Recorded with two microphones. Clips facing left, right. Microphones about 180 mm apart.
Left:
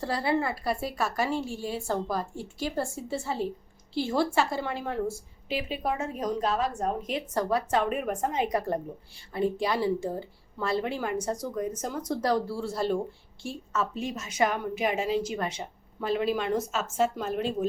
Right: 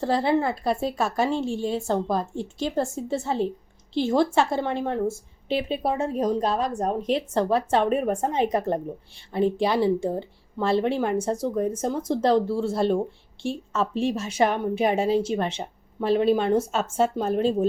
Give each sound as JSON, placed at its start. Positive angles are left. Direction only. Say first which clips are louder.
{"t": 0.0, "sound": "a woman's voice", "louder": "right 5 dB", "side_deg": -25}